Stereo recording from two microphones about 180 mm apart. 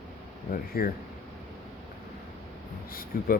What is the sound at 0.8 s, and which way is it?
Speech, 55° left (ahead or behind).